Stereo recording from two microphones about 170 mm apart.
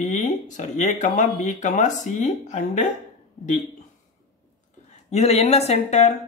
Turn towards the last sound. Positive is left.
turn(degrees=40)  # may be behind; listen again after turning